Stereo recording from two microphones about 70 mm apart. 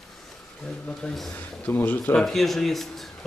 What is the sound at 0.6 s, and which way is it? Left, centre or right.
Speech, centre.